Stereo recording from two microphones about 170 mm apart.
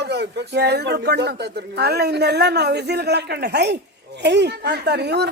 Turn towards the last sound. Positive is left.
turn(degrees=-80)